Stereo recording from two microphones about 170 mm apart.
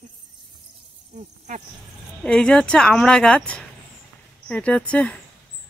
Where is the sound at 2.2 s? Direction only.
5° left (ahead or behind).